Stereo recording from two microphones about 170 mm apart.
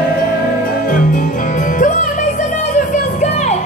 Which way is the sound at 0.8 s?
55° left (ahead or behind).